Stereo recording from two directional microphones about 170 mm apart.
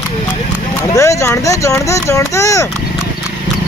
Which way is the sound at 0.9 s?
20° left (ahead or behind).